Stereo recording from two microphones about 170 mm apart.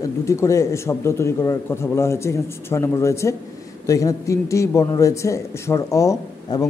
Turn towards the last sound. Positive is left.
turn(degrees=20)  # may be behind; listen again after turning